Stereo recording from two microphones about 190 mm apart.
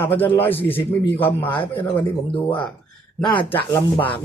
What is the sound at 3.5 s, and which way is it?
Speech, 10° left (ahead or behind).